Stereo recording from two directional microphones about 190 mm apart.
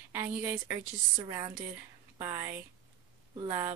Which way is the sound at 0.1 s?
10° right (ahead or behind).